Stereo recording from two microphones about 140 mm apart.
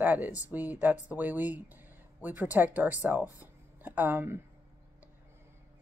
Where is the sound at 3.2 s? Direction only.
25° left (ahead or behind).